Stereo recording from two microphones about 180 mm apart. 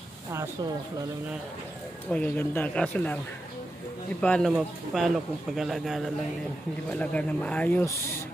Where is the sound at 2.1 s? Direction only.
10° left (ahead or behind).